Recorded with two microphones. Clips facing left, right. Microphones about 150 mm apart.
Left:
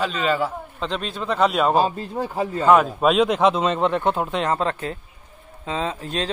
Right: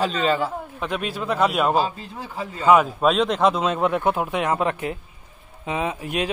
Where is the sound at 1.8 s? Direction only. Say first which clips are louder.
Left 3 dB; 45° left (ahead or behind).